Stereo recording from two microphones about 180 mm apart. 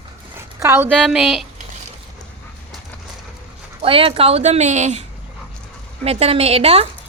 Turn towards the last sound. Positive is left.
turn(degrees=-35)  # may be behind; listen again after turning